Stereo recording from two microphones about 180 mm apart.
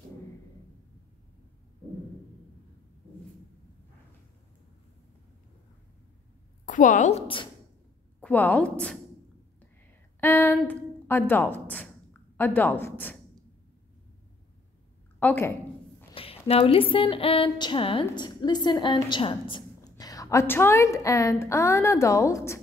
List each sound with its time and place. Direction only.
6.6 s a woman's voice: 45° left (ahead or behind)
8.2 s a woman's voice: 10° left (ahead or behind)
10.2 s a sound: 10° left (ahead or behind)
15.1 s a woman's voice: 10° left (ahead or behind)
16.2 s a sound: 30° left (ahead or behind)
16.9 s a woman's voice: 30° left (ahead or behind)